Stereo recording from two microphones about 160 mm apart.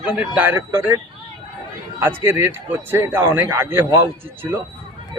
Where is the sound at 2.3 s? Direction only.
15° right (ahead or behind).